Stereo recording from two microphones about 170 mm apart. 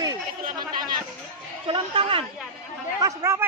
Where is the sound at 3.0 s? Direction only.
20° right (ahead or behind).